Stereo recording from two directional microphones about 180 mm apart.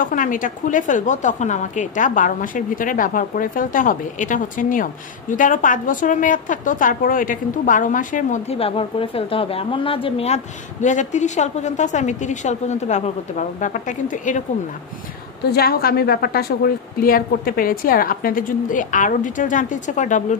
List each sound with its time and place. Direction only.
0.0 s a woman's voice: 50° left (ahead or behind)
15.5 s a woman's voice: 60° left (ahead or behind)